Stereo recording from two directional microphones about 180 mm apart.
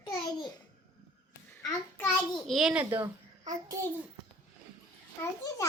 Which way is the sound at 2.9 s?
15° right (ahead or behind).